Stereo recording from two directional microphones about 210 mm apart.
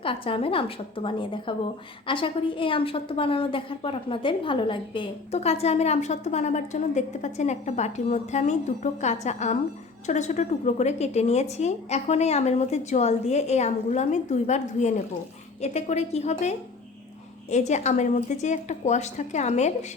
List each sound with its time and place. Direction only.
0.0 s a woman's voice: 25° left (ahead or behind)